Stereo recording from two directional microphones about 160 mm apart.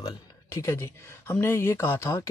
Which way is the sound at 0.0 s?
20° left (ahead or behind).